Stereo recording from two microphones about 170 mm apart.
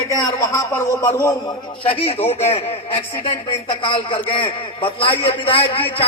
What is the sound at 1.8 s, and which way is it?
A man's voice, 35° left (ahead or behind).